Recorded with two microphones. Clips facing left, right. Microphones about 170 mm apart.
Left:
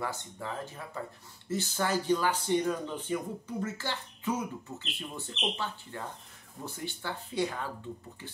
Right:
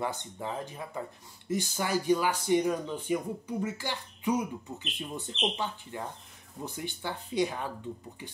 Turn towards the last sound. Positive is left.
turn(degrees=-15)  # may be behind; listen again after turning